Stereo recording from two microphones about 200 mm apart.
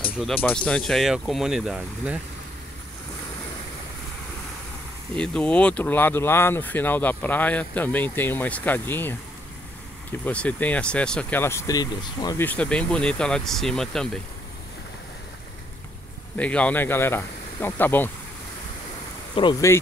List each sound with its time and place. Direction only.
0.2 s speech: 10° left (ahead or behind)
5.1 s speech: 5° left (ahead or behind)
10.2 s speech: 5° left (ahead or behind)
16.3 s speech: 5° left (ahead or behind)
19.3 s speech: 25° left (ahead or behind)